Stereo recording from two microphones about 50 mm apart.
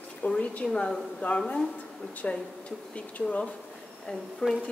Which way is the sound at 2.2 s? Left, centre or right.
Left.